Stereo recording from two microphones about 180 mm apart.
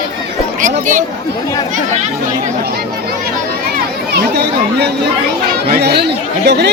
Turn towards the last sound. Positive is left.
turn(degrees=-70)  # may be behind; listen again after turning